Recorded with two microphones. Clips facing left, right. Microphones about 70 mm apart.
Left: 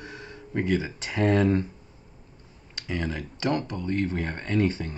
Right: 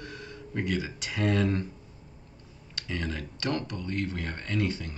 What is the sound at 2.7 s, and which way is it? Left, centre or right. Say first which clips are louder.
Speech: left 3 dB; left.